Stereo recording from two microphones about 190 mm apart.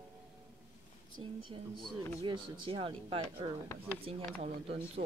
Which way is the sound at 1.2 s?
25° right (ahead or behind).